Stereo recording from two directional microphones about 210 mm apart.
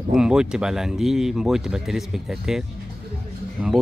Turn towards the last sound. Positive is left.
turn(degrees=-5)  # may be behind; listen again after turning